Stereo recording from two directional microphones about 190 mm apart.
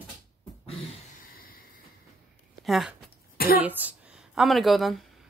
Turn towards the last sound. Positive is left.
turn(degrees=0)  # may be behind; listen again after turning